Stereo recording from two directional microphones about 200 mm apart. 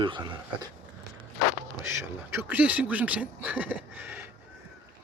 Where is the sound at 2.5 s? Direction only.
5° right (ahead or behind).